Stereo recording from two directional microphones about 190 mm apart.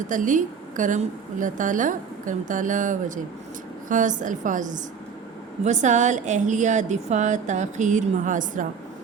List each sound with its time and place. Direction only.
0.1 s a woman's voice: 40° right (ahead or behind)